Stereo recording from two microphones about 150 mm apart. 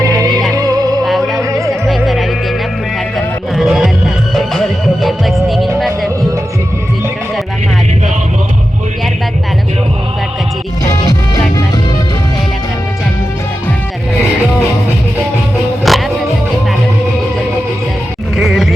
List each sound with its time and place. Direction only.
0.0 s music: 25° right (ahead or behind)
1.0 s music: centre (ahead or behind)
1.4 s music: 20° right (ahead or behind)
1.9 s music: centre (ahead or behind)
3.5 s music: centre (ahead or behind)
15.8 s music: centre (ahead or behind)
18.3 s music: centre (ahead or behind)